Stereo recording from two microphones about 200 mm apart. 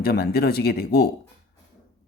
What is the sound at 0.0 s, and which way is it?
Speech, 50° left (ahead or behind).